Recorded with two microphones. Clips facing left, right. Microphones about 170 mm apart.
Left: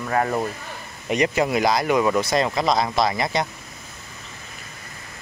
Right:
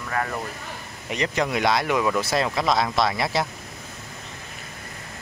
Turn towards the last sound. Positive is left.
turn(degrees=0)  # may be behind; listen again after turning